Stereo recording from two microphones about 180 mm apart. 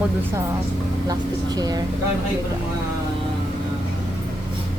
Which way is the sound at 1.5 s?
20° right (ahead or behind).